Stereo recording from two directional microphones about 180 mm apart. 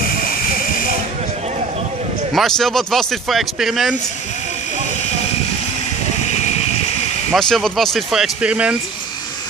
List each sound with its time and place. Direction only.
2.3 s speech: centre (ahead or behind)
6.3 s a sound: 35° left (ahead or behind)
7.3 s speech: 5° left (ahead or behind)